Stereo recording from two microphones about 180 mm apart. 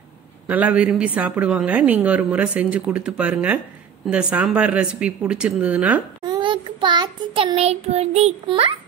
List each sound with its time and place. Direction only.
0.5 s a woman's voice: 10° right (ahead or behind)
6.2 s child singing: 25° right (ahead or behind)